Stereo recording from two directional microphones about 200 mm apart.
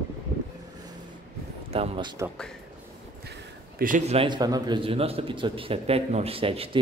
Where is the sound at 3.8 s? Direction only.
40° right (ahead or behind).